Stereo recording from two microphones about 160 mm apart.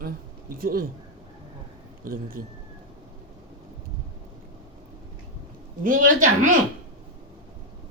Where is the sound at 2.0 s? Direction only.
65° right (ahead or behind).